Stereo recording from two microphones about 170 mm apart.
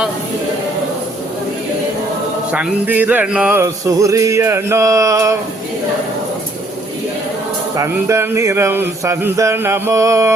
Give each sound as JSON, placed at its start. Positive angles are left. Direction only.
{"t": 2.5, "sound": "music", "side_deg": -10}
{"t": 7.8, "sound": "music", "side_deg": -15}